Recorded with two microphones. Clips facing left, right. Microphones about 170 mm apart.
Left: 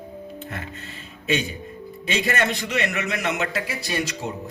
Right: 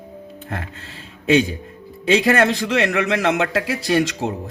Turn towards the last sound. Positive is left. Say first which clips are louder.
# right 8 dB
turn(degrees=-90)